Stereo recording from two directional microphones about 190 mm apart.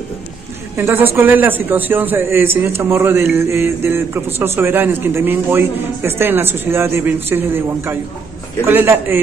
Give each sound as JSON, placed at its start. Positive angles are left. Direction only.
{"t": 0.7, "sound": "a man's voice", "side_deg": -10}